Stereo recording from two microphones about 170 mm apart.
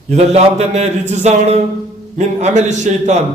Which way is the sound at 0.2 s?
40° right (ahead or behind).